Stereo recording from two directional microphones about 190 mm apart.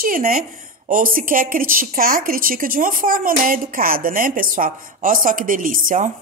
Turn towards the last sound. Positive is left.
turn(degrees=-45)  # may be behind; listen again after turning